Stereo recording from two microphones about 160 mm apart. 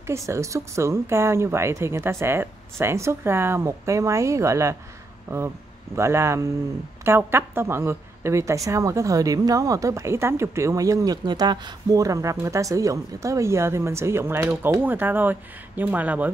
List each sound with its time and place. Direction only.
0.0 s speech: 15° right (ahead or behind)